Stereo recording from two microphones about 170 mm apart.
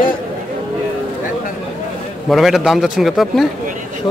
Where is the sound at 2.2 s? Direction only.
Centre (ahead or behind).